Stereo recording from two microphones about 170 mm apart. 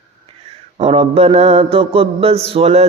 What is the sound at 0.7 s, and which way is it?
Mantra, 35° right (ahead or behind).